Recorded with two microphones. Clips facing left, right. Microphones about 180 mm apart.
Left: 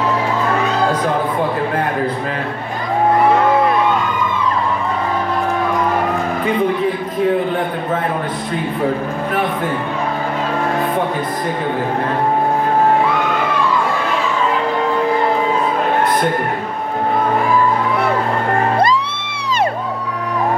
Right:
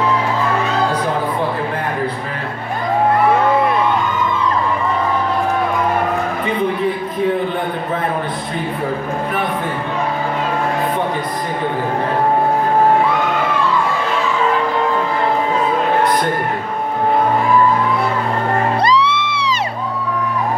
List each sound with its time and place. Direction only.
18.8 s music: 50° left (ahead or behind)